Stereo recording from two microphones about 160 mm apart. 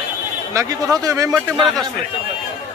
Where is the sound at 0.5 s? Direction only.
20° right (ahead or behind).